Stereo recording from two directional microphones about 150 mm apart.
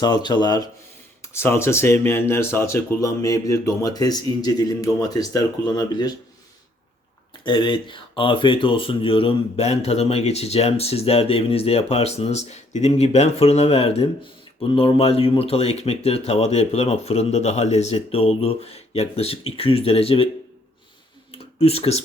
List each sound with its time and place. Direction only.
0.0 s speech: 30° left (ahead or behind)
1.2 s speech: 15° left (ahead or behind)
7.4 s speech: 30° left (ahead or behind)
21.3 s a sound: 40° left (ahead or behind)